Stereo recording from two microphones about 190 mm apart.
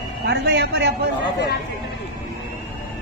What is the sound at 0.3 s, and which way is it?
Speech, 65° right (ahead or behind).